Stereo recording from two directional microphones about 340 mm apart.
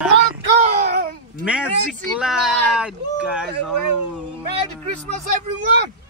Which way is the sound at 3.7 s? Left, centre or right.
Right.